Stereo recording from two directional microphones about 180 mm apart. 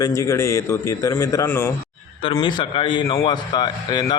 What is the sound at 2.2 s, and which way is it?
A man's voice, 25° left (ahead or behind).